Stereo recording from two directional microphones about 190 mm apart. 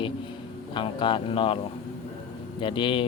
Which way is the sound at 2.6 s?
25° left (ahead or behind).